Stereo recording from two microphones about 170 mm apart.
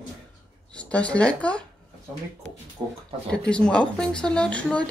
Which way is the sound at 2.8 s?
25° right (ahead or behind).